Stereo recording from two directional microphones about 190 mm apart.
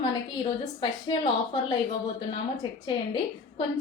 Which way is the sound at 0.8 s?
25° left (ahead or behind).